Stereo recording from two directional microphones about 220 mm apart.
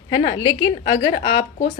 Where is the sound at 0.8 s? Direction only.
35° left (ahead or behind).